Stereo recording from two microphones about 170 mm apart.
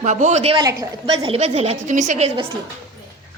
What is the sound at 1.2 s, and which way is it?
A woman's voice, 35° right (ahead or behind).